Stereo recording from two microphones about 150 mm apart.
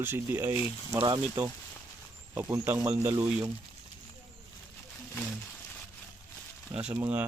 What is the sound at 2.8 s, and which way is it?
Speech, 15° right (ahead or behind).